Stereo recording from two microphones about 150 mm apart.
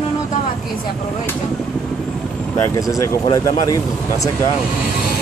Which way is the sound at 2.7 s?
20° left (ahead or behind).